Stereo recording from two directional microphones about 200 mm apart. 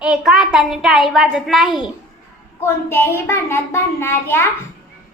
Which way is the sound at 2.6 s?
10° left (ahead or behind).